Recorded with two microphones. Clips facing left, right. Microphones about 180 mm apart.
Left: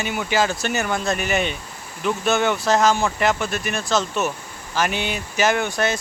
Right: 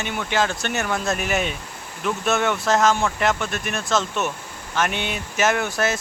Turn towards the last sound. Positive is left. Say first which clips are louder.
# left 1 dB
turn(degrees=-5)  # may be behind; listen again after turning